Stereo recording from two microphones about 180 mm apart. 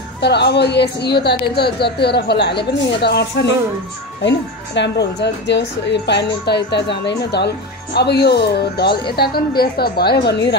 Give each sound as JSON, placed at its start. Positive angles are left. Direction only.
{"t": 0.2, "sound": "a woman's voice", "side_deg": 70}